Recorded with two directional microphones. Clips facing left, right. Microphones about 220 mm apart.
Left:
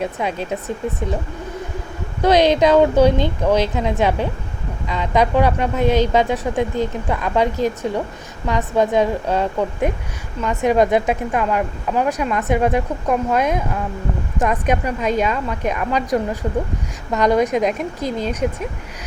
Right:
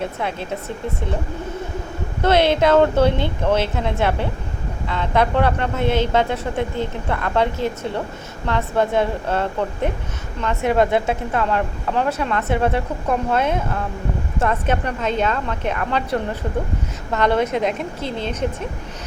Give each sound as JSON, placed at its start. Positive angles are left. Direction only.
{"t": 0.0, "sound": "speech", "side_deg": 15}
{"t": 2.2, "sound": "speech", "side_deg": 15}
{"t": 17.5, "sound": "speech", "side_deg": -25}
{"t": 18.0, "sound": "speech", "side_deg": 10}